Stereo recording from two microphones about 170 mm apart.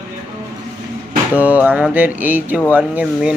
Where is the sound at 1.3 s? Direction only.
10° right (ahead or behind).